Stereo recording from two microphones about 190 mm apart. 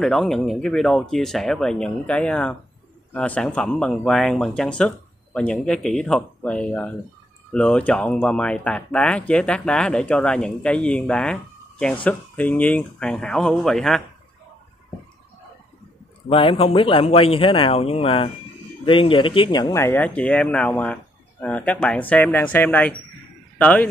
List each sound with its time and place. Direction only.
0.0 s speech: centre (ahead or behind)
16.3 s speech: 30° left (ahead or behind); by 23.9 s 10° left (ahead or behind)